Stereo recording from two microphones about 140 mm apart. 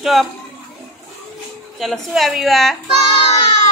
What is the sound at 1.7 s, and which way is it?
A woman's voice, centre (ahead or behind).